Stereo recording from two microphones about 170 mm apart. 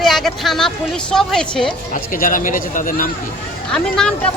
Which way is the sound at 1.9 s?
50° left (ahead or behind).